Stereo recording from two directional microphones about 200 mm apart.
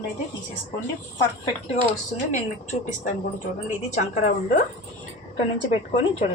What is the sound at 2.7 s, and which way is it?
Speech, 35° left (ahead or behind).